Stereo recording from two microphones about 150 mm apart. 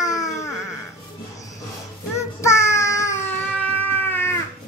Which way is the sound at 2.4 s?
20° left (ahead or behind).